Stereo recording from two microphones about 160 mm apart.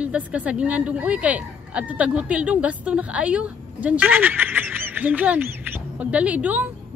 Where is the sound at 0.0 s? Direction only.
10° right (ahead or behind).